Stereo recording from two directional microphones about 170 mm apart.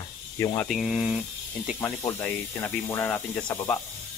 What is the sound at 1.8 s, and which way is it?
Speech, 15° left (ahead or behind).